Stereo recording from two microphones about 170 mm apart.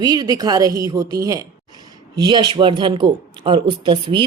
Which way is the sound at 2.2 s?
25° right (ahead or behind).